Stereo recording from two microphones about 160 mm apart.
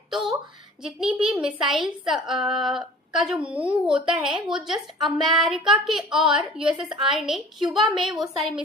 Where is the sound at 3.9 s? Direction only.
5° right (ahead or behind).